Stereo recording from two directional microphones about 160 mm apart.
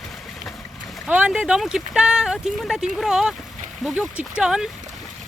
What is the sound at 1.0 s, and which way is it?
Speech, 10° right (ahead or behind).